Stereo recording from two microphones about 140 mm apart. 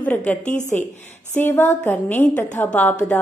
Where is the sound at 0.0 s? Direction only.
10° left (ahead or behind).